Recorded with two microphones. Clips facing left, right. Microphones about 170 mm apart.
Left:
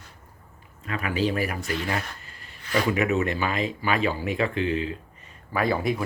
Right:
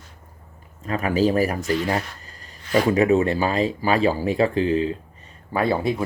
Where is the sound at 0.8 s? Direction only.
40° right (ahead or behind).